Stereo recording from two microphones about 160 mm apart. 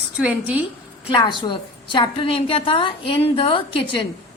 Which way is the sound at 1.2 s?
30° left (ahead or behind).